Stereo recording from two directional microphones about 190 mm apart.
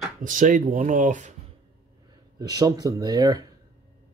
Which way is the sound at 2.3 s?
20° right (ahead or behind).